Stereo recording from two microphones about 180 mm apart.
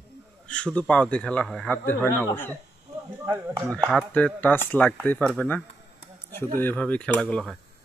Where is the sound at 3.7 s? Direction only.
5° left (ahead or behind).